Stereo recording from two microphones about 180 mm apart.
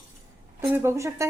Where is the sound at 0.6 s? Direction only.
15° right (ahead or behind).